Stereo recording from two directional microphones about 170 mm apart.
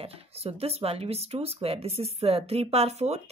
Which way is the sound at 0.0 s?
35° right (ahead or behind).